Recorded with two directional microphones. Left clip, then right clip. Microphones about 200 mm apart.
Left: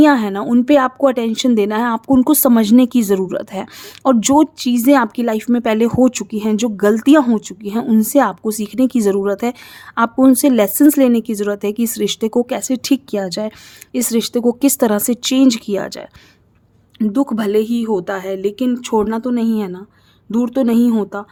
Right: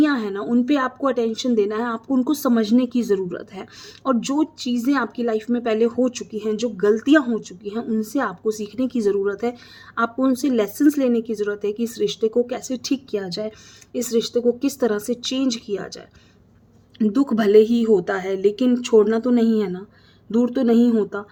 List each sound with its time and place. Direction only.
0.0 s speech: 50° left (ahead or behind)
17.0 s a woman's voice: 25° left (ahead or behind)